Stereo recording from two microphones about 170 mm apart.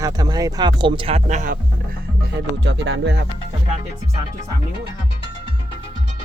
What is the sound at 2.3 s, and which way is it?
Speech, 90° right.